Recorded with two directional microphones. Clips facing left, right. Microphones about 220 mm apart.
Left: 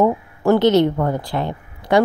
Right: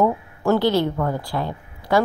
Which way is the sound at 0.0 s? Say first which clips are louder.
Left 3 dB; 20° left (ahead or behind).